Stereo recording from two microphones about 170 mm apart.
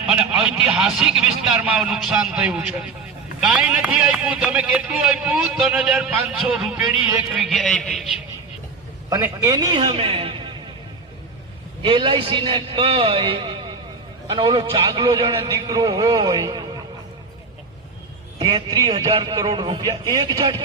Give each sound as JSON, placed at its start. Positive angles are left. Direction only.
{"t": 0.1, "sound": "speech", "side_deg": -5}
{"t": 9.0, "sound": "a man's voice", "side_deg": -20}
{"t": 11.8, "sound": "a man's voice", "side_deg": -30}
{"t": 18.3, "sound": "a man's voice", "side_deg": -25}